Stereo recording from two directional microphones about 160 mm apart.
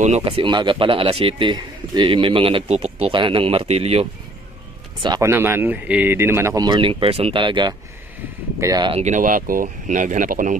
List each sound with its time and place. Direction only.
0.0 s speech: 45° right (ahead or behind)
0.4 s speech: 30° right (ahead or behind)
5.0 s speech: 25° right (ahead or behind)
5.3 s speech: 15° right (ahead or behind)
8.9 s speech: 50° right (ahead or behind)